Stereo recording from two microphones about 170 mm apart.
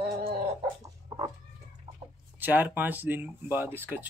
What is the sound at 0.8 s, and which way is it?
Chicken, 25° right (ahead or behind).